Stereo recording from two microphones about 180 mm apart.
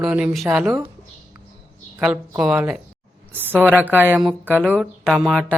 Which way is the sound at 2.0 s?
5° right (ahead or behind).